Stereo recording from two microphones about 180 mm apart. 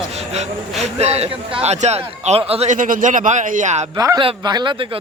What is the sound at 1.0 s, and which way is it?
A man's voice, 35° right (ahead or behind).